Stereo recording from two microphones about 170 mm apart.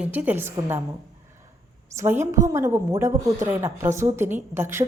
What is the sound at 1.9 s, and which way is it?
A woman's voice, 15° right (ahead or behind).